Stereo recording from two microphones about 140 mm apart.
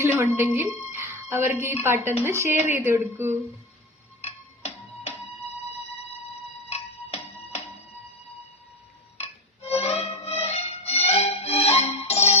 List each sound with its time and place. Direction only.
0.0 s speech: 15° right (ahead or behind)
0.9 s a sound: 15° right (ahead or behind)
1.6 s a woman's voice: 15° right (ahead or behind)
4.2 s music: 50° left (ahead or behind)
6.7 s music: 50° left (ahead or behind)
9.1 s music: 50° left (ahead or behind)